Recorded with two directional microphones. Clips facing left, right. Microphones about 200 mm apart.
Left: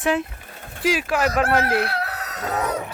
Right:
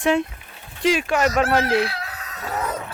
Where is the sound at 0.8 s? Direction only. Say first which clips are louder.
Right 2 dB; 5° left (ahead or behind).